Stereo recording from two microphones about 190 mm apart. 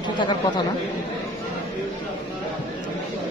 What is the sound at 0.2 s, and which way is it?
Speech, 25° left (ahead or behind).